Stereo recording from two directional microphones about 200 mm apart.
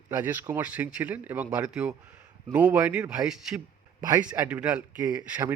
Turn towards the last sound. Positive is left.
turn(degrees=-15)  # may be behind; listen again after turning